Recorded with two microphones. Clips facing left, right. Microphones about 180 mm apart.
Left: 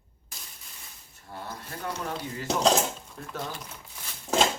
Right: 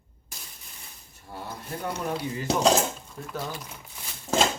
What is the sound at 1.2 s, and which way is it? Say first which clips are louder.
Dishes: right 2 dB; 10° right (ahead or behind).